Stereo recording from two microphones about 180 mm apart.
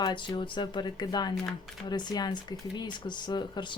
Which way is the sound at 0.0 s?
25° left (ahead or behind).